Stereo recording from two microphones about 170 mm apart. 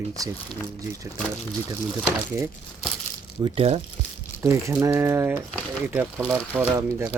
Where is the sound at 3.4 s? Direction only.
35° right (ahead or behind).